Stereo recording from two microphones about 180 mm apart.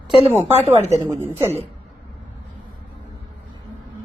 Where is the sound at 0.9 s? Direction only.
20° right (ahead or behind).